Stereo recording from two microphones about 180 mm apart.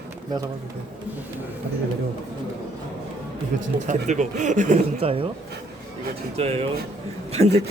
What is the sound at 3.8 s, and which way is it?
Speech, 40° right (ahead or behind).